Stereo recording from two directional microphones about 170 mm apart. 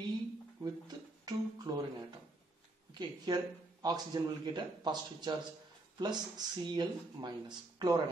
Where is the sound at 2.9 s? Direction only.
25° right (ahead or behind).